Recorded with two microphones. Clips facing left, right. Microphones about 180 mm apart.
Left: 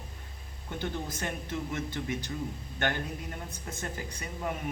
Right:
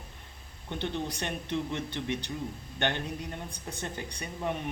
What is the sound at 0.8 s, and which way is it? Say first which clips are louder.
A man's voice: right 1 dB; 30° right (ahead or behind).